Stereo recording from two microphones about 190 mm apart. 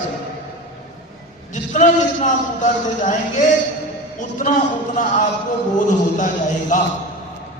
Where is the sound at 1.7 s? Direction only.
40° left (ahead or behind).